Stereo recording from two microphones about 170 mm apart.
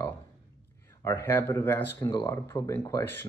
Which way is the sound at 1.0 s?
15° left (ahead or behind).